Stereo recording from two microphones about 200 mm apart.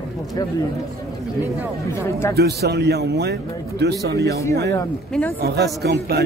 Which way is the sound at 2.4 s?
55° right (ahead or behind).